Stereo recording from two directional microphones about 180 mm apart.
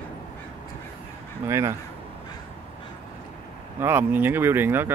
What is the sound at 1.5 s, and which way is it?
Speech, 15° right (ahead or behind).